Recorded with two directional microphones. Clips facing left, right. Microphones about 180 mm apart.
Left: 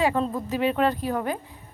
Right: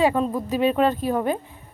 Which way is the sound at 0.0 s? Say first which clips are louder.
Right 3 dB; 15° right (ahead or behind).